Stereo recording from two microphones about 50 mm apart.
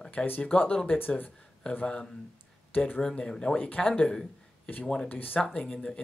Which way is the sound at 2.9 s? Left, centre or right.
Centre.